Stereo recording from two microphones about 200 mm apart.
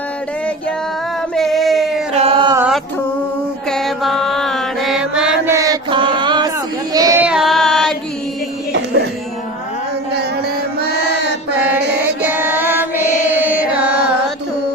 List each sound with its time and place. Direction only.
1.4 s a sound: centre (ahead or behind)
2.1 s a sound: 30° right (ahead or behind)
2.6 s mantra: 5° right (ahead or behind)
5.5 s chant: 15° right (ahead or behind)
6.9 s child singing: 15° right (ahead or behind)
7.3 s carnatic music: centre (ahead or behind)
12.2 s music: 10° right (ahead or behind)